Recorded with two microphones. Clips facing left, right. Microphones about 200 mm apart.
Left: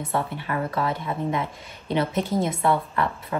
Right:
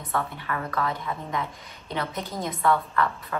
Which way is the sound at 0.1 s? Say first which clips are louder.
Left 1 dB; 25° left (ahead or behind).